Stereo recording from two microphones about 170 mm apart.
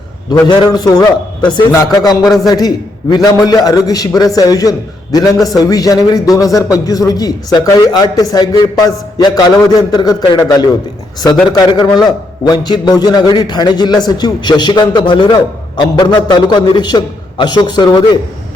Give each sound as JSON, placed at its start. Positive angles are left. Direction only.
{"t": 0.3, "sound": "a man's voice", "side_deg": 25}
{"t": 2.2, "sound": "a man's voice", "side_deg": 0}
{"t": 2.5, "sound": "a man's voice", "side_deg": 20}